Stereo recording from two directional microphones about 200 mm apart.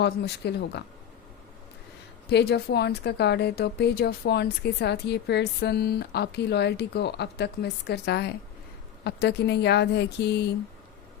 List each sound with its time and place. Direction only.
0.0 s a woman's voice: 55° left (ahead or behind)
2.3 s a woman's voice: 55° left (ahead or behind)